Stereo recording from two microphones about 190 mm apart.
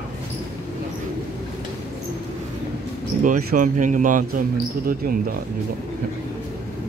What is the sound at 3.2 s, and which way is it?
Speech, 45° right (ahead or behind).